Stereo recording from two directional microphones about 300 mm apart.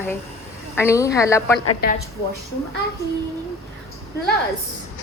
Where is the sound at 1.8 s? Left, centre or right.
Left.